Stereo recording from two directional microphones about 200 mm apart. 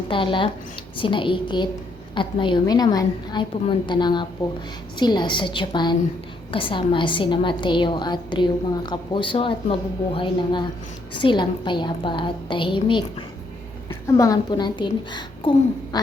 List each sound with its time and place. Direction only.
0.1 s a woman's voice: 25° left (ahead or behind)